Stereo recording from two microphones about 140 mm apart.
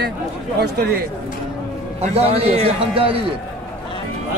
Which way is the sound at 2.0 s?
45° right (ahead or behind).